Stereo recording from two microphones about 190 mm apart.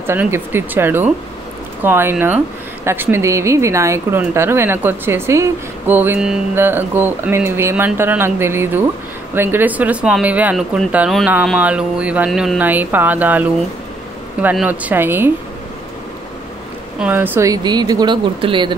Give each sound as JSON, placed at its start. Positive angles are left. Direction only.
{"t": 0.0, "sound": "a woman's voice", "side_deg": -10}
{"t": 17.0, "sound": "speech", "side_deg": -10}